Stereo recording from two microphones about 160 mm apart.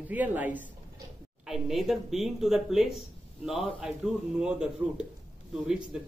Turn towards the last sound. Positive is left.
turn(degrees=-5)  # may be behind; listen again after turning